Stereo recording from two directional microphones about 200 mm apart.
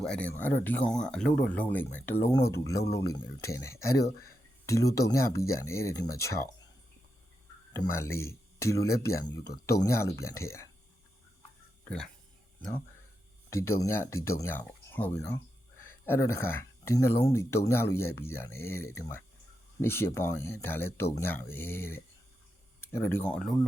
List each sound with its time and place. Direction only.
0.0 s speech: 5° left (ahead or behind)
4.0 s speech: 50° left (ahead or behind)
4.6 s speech: 15° left (ahead or behind)
7.7 s speech: 10° left (ahead or behind)
13.5 s speech: 15° left (ahead or behind)